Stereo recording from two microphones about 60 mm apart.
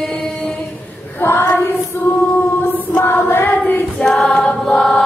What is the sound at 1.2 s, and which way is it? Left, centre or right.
Child singing, left.